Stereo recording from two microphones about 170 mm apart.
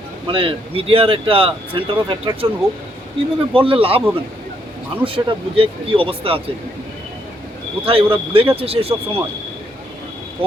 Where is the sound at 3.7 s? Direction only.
35° right (ahead or behind).